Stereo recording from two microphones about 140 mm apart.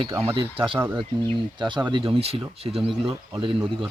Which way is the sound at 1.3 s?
35° right (ahead or behind).